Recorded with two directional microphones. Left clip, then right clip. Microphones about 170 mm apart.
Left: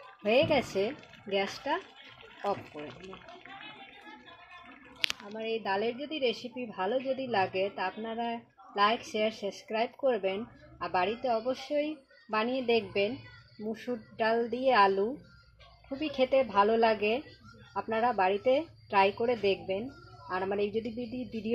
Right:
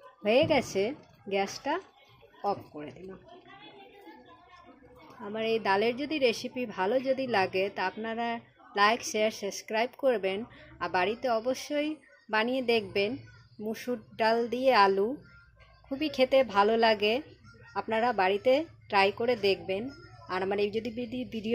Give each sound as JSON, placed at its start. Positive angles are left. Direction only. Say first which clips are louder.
{"t": 0.2, "sound": "speech", "louder": "right 1 dB", "side_deg": -25}
{"t": 5.3, "sound": "a woman's voice", "louder": "right 5 dB", "side_deg": -20}